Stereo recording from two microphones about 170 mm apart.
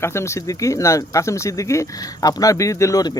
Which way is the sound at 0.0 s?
15° left (ahead or behind).